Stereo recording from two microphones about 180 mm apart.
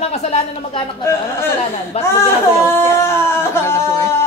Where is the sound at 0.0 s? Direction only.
35° left (ahead or behind).